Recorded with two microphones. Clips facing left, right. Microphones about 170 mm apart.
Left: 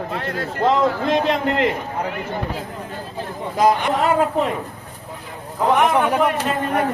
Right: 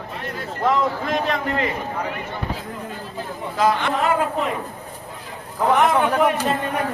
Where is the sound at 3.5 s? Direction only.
15° left (ahead or behind).